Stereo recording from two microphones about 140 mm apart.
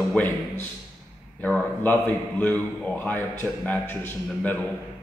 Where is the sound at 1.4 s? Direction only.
10° left (ahead or behind).